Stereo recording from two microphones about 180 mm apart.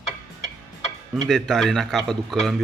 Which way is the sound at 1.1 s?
Centre (ahead or behind).